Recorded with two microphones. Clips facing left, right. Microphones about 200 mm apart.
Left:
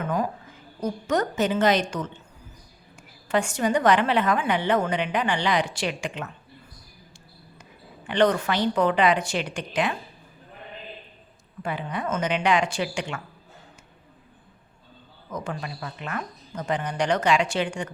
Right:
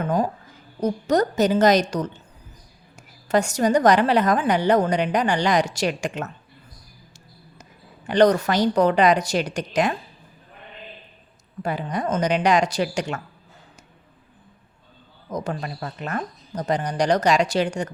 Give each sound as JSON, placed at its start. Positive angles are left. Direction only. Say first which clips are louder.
{"t": 0.0, "sound": "a sound", "louder": "right 4 dB", "side_deg": -30}
{"t": 0.8, "sound": "a woman's voice", "louder": "right 5 dB", "side_deg": -35}
{"t": 7.6, "sound": "a woman's voice", "louder": "right 1 dB", "side_deg": -40}
{"t": 11.6, "sound": "a woman's voice", "louder": "right 4 dB", "side_deg": -40}
{"t": 15.3, "sound": "a woman's voice", "louder": "right 4 dB", "side_deg": -40}